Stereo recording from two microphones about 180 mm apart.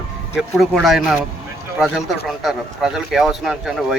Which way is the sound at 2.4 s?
Centre (ahead or behind).